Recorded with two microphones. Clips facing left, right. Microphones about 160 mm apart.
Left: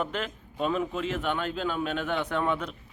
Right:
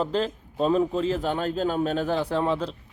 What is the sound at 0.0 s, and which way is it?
A man's voice, 35° right (ahead or behind).